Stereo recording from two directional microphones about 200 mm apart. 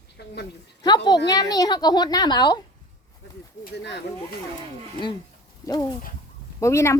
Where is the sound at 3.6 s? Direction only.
60° left (ahead or behind).